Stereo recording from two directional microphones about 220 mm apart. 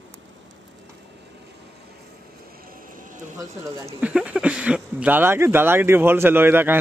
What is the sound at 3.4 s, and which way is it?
Speech, 15° right (ahead or behind).